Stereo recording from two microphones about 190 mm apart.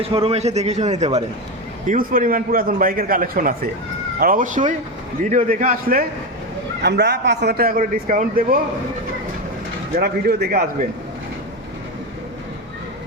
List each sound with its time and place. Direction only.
0.0 s a man's voice: 30° right (ahead or behind)
1.9 s a man's voice: 45° right (ahead or behind)
6.8 s a man's voice: 60° right (ahead or behind)
9.9 s a man's voice: 55° right (ahead or behind)